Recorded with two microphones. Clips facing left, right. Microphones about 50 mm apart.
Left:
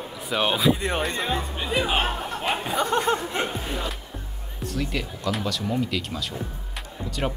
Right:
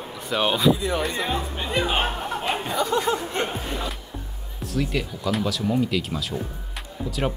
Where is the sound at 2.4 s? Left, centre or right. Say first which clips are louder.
Left 2 dB; centre.